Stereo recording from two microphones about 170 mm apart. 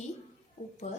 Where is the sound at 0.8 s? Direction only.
40° left (ahead or behind).